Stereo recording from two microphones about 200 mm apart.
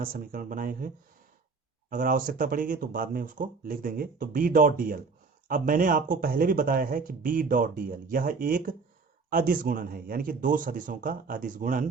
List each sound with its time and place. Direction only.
0.0 s speech: 45° right (ahead or behind)